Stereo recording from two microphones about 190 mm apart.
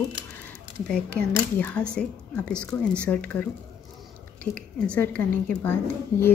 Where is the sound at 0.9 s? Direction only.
5° left (ahead or behind).